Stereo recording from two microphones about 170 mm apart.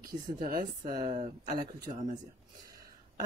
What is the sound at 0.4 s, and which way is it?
Speech, 55° right (ahead or behind).